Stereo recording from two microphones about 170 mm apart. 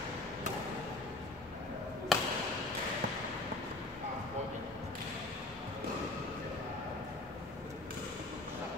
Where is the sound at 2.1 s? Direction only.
Centre (ahead or behind).